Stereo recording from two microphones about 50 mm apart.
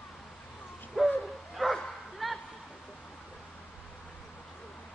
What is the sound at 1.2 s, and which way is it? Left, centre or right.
Bow-wow, centre.